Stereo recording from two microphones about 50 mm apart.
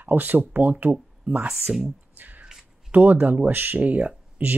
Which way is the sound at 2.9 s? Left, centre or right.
Right.